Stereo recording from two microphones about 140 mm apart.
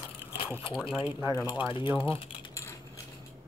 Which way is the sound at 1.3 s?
25° left (ahead or behind).